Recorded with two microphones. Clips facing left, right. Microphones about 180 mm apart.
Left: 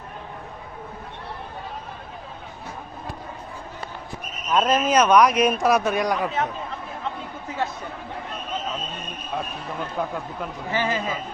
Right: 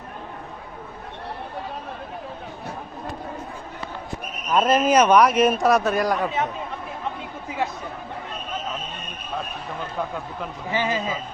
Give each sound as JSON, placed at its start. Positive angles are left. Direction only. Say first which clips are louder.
{"t": 4.5, "sound": "a man's voice", "louder": "right 2 dB", "side_deg": -10}
{"t": 10.7, "sound": "a man's voice", "louder": "right 1 dB", "side_deg": -20}